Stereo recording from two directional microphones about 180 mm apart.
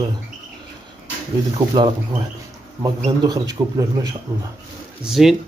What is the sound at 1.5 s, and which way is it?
Speech, 25° right (ahead or behind).